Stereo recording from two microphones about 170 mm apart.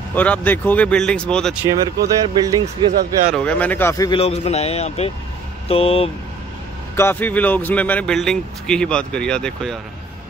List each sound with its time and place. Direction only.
0.1 s speech: 10° left (ahead or behind)
2.0 s speech: 20° right (ahead or behind)
3.3 s speech: 5° left (ahead or behind)
4.1 s a man's voice: 35° left (ahead or behind)
7.0 s speech: 10° left (ahead or behind)